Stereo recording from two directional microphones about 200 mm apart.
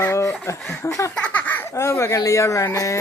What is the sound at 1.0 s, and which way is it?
Speech, 10° left (ahead or behind).